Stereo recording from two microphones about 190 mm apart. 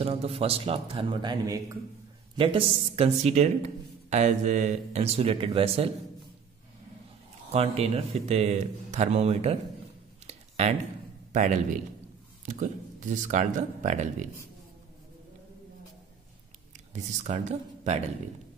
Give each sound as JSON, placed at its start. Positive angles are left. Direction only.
{"t": 0.0, "sound": "speech", "side_deg": -30}
{"t": 7.5, "sound": "speech", "side_deg": -35}
{"t": 10.2, "sound": "a sound", "side_deg": -35}
{"t": 11.3, "sound": "speech", "side_deg": -40}
{"t": 16.9, "sound": "speech", "side_deg": -40}